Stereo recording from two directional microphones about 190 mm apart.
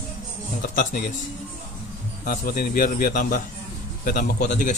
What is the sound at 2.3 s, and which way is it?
A man's voice, 50° left (ahead or behind).